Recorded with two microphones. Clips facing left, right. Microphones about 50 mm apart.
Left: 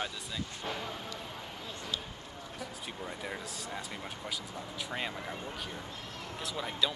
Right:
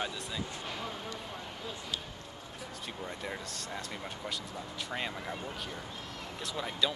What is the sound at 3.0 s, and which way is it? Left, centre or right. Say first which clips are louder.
Speech: even; centre.